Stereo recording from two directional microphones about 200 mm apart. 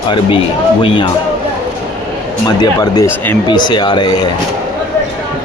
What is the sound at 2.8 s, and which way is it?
Speech, 20° left (ahead or behind).